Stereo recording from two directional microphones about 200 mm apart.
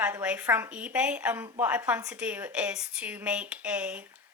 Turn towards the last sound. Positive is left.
turn(degrees=-5)  # may be behind; listen again after turning